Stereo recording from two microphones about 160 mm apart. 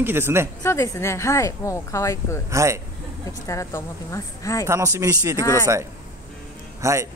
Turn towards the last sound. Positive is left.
turn(degrees=-20)  # may be behind; listen again after turning